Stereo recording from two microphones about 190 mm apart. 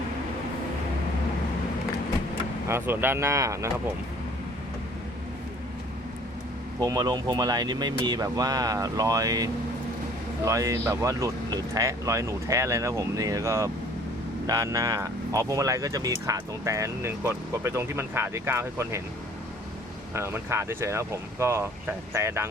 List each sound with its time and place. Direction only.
2.6 s speech: 10° right (ahead or behind)
6.7 s speech: 20° right (ahead or behind)
20.1 s speech: 15° right (ahead or behind)